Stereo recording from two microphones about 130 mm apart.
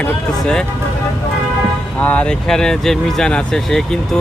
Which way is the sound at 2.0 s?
10° left (ahead or behind).